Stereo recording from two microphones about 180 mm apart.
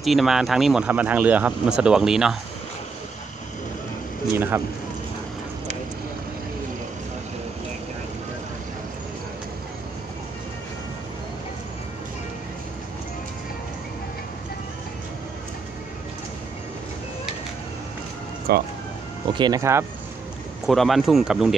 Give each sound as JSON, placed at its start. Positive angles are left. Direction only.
{"t": 0.0, "sound": "speech", "side_deg": 0}
{"t": 4.5, "sound": "speech", "side_deg": -15}
{"t": 18.5, "sound": "speech", "side_deg": -60}
{"t": 19.3, "sound": "speech", "side_deg": -20}
{"t": 20.6, "sound": "speech", "side_deg": 0}